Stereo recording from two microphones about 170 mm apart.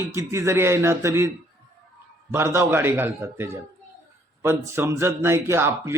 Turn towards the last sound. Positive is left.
turn(degrees=-15)  # may be behind; listen again after turning